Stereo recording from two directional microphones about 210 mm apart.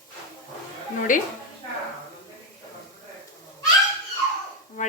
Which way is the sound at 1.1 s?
40° left (ahead or behind).